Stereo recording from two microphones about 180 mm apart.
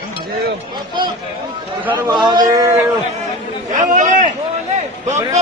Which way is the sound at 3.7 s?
45° right (ahead or behind).